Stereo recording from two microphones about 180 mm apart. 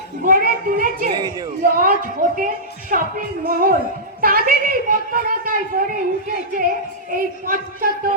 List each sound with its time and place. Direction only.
0.3 s a woman's voice: 50° right (ahead or behind)
1.1 s a man's voice: 20° right (ahead or behind)
1.6 s a woman's voice: 50° right (ahead or behind)
7.1 s a woman's voice: 50° right (ahead or behind)